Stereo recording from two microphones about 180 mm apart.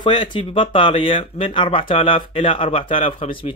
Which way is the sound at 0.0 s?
25° left (ahead or behind).